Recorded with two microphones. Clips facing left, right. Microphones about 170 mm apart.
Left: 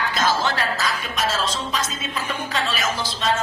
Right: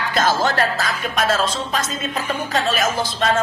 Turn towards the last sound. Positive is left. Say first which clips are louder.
# right 4 dB
turn(degrees=-50)  # may be behind; listen again after turning